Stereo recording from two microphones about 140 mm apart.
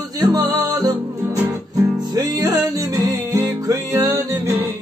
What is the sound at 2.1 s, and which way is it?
Music, 25° right (ahead or behind).